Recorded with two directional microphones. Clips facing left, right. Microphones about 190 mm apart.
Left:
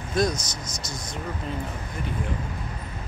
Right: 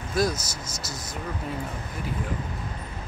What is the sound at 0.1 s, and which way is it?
Speech, 5° right (ahead or behind).